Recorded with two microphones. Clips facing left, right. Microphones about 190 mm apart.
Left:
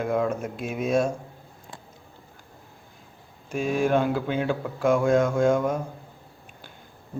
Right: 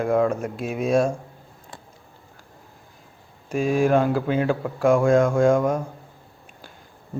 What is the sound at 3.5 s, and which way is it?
Speech, centre (ahead or behind).